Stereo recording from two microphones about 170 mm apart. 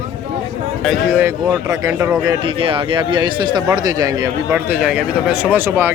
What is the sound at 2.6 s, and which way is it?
A man's voice, 30° right (ahead or behind).